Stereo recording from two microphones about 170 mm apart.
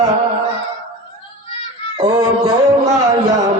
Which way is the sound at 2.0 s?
20° right (ahead or behind).